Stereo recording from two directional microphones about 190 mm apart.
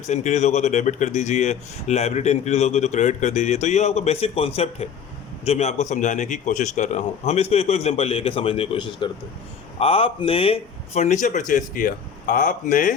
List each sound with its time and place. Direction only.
0.1 s speech: 35° left (ahead or behind)